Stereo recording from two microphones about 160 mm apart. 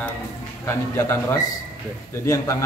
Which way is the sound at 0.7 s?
15° left (ahead or behind).